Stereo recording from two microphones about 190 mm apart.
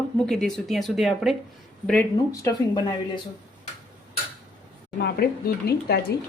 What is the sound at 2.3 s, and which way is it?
Speech, 15° left (ahead or behind).